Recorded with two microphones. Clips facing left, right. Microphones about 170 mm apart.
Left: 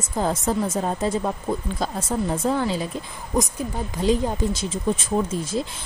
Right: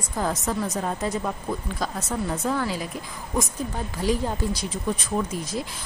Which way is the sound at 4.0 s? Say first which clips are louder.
Left 4 dB; 20° left (ahead or behind).